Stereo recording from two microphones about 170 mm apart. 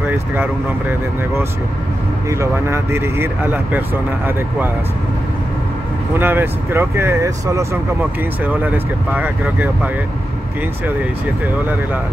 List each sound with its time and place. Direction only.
0.0 s speech: 10° right (ahead or behind)
6.1 s speech: 10° right (ahead or behind)